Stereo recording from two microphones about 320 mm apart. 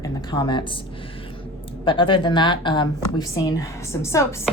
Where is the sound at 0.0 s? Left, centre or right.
Centre.